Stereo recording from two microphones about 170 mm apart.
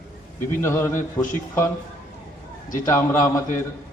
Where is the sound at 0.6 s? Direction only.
15° left (ahead or behind).